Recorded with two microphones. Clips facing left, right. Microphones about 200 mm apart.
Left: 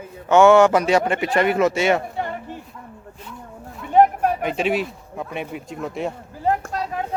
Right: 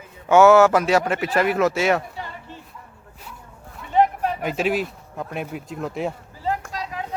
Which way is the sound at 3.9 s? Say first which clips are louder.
Left 4 dB; 50° left (ahead or behind).